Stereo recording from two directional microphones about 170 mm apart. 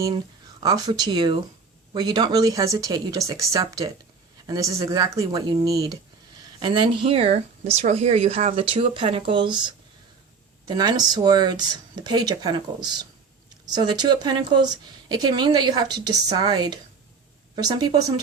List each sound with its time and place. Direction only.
0.6 s speech: 20° right (ahead or behind)